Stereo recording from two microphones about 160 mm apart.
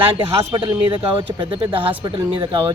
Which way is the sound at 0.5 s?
30° right (ahead or behind).